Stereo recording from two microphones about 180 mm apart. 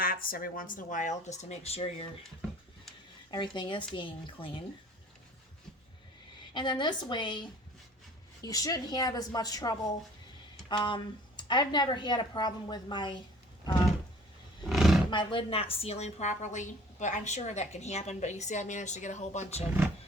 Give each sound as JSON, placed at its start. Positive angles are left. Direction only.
{"t": 0.0, "sound": "speech", "side_deg": 55}
{"t": 3.3, "sound": "a woman's voice", "side_deg": 25}
{"t": 6.5, "sound": "a woman's voice", "side_deg": 25}
{"t": 14.7, "sound": "roar", "side_deg": 0}
{"t": 15.1, "sound": "a woman's voice", "side_deg": 25}